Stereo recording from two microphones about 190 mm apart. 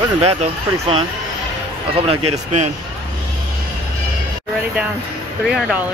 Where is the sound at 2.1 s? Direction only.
35° right (ahead or behind).